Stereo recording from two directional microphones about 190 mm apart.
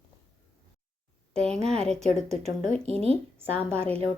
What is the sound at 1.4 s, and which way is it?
Speech, 5° left (ahead or behind).